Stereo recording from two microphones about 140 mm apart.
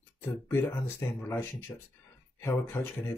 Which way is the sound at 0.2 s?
15° left (ahead or behind).